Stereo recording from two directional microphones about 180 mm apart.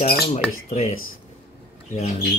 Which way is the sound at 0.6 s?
35° left (ahead or behind).